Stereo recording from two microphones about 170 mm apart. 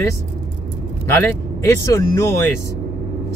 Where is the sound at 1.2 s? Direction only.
15° left (ahead or behind).